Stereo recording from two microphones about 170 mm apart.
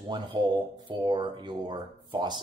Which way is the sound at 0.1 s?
30° right (ahead or behind).